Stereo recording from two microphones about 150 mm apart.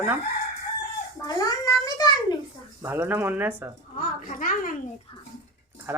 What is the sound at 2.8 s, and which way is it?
Speech, 15° right (ahead or behind).